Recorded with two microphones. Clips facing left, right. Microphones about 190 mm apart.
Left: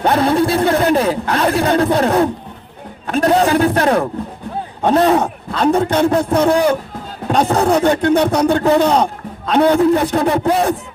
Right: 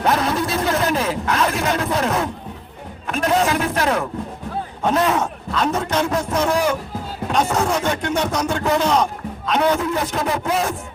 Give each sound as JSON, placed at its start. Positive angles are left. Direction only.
{"t": 0.0, "sound": "a man's voice", "side_deg": 30}